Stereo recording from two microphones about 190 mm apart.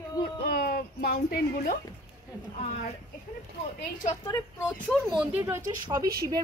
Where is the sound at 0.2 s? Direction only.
55° left (ahead or behind).